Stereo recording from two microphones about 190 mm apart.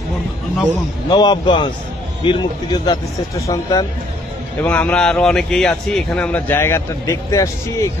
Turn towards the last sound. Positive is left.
turn(degrees=15)  # may be behind; listen again after turning